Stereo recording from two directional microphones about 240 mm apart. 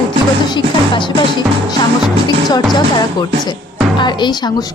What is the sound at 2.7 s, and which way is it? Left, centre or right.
Speech, centre.